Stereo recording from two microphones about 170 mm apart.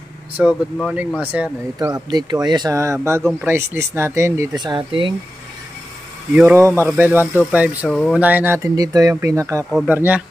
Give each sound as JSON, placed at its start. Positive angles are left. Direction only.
{"t": 0.4, "sound": "speech", "side_deg": -5}
{"t": 1.8, "sound": "speech", "side_deg": -25}
{"t": 6.3, "sound": "speech", "side_deg": -10}
{"t": 9.7, "sound": "speech", "side_deg": -10}